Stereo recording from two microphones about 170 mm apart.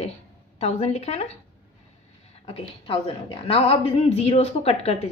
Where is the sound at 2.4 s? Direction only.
35° left (ahead or behind).